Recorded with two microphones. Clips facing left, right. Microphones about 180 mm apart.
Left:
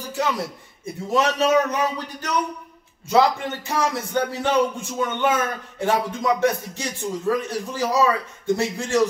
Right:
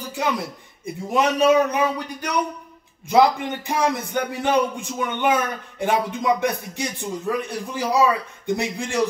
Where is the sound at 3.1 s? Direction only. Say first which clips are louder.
Right 1 dB; 15° right (ahead or behind).